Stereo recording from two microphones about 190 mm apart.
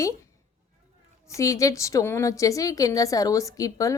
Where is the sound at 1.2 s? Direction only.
15° left (ahead or behind).